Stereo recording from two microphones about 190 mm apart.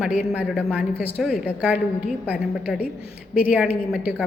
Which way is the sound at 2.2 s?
10° right (ahead or behind).